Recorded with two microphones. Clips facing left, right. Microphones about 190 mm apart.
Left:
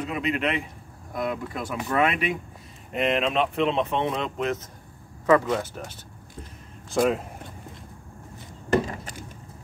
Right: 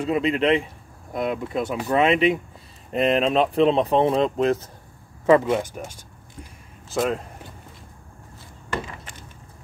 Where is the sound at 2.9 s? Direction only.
35° right (ahead or behind).